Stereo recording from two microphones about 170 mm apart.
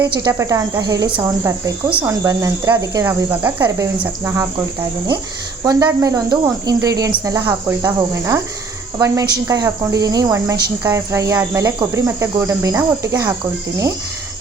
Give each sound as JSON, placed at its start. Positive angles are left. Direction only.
{"t": 0.0, "sound": "a woman's voice", "side_deg": -20}
{"t": 2.0, "sound": "a woman's voice", "side_deg": -20}